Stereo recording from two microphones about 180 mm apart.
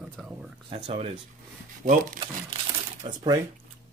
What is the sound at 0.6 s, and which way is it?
Speech, 30° right (ahead or behind).